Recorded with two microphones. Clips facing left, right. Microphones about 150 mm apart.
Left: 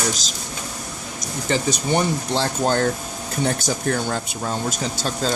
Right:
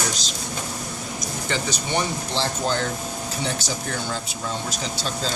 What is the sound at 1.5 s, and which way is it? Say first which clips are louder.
Speech: left 6 dB; 45° left (ahead or behind).